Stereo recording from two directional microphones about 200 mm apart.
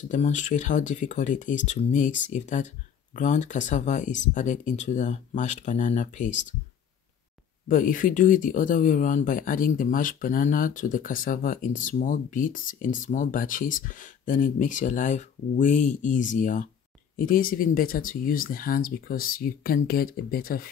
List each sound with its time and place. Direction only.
0.1 s speech: 40° left (ahead or behind)
7.6 s speech: 40° left (ahead or behind)